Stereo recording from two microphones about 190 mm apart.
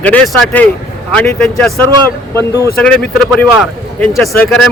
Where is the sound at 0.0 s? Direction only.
5° left (ahead or behind).